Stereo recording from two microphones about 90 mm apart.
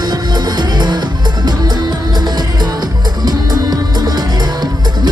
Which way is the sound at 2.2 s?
50° right (ahead or behind).